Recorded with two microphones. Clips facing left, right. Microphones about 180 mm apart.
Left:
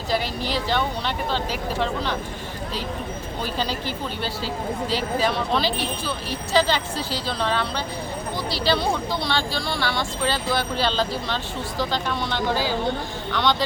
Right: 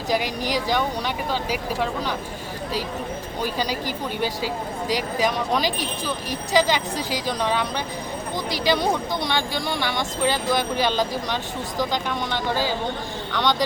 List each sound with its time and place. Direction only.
0.1 s speech: 15° right (ahead or behind)
3.4 s speech: 10° right (ahead or behind)